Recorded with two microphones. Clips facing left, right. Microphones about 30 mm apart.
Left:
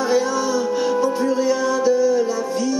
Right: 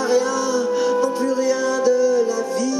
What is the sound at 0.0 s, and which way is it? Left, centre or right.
Music, centre.